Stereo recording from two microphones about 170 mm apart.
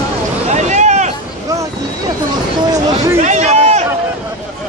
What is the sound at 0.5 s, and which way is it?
Vehicle, 45° right (ahead or behind).